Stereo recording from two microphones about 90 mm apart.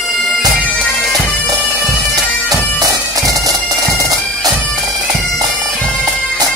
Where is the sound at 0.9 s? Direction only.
Centre (ahead or behind).